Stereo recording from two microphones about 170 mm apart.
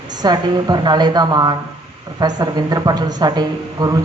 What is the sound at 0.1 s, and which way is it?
Speech, 25° right (ahead or behind).